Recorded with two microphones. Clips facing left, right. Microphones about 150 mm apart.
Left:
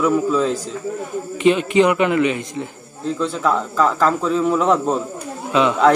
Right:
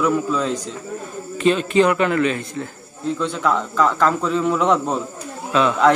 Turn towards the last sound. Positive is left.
turn(degrees=15)  # may be behind; listen again after turning